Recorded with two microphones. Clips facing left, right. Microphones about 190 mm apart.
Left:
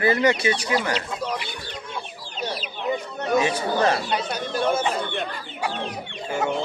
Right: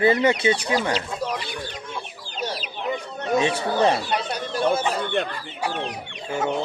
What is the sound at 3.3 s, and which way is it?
Chicken, 25° right (ahead or behind).